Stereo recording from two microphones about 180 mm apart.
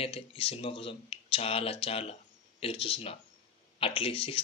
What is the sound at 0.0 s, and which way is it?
Speech, 30° left (ahead or behind).